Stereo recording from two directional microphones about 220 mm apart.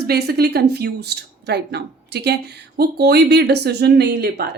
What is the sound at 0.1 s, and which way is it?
Speech, 45° right (ahead or behind).